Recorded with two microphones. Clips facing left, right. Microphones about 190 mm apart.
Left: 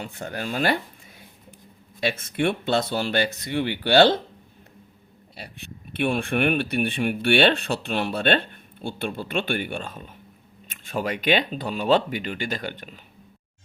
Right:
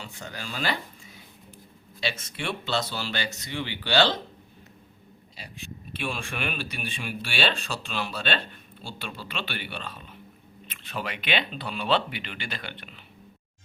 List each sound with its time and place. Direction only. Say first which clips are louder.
0.0 s speech: left 7 dB; 55° left (ahead or behind)
2.0 s speech: left 8 dB; 55° left (ahead or behind)
5.4 s speech: left 2 dB; 60° left (ahead or behind); by 13.0 s 40° left (ahead or behind)